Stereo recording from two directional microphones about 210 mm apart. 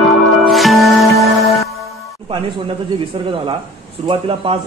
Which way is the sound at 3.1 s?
25° right (ahead or behind).